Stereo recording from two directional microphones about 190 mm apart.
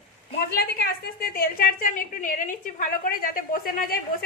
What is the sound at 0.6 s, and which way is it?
A woman's voice, 50° left (ahead or behind).